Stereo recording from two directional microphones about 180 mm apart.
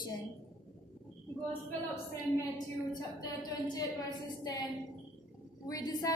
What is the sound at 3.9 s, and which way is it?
Speech, 20° left (ahead or behind).